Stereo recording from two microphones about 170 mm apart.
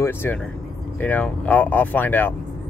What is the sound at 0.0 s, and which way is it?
Speech, 15° left (ahead or behind).